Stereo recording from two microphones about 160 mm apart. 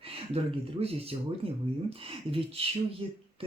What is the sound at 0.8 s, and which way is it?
Speech, 40° right (ahead or behind).